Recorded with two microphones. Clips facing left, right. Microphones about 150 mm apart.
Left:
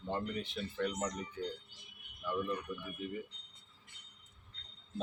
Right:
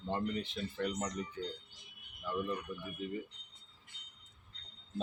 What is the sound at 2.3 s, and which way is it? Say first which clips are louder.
Speech: even; 5° right (ahead or behind).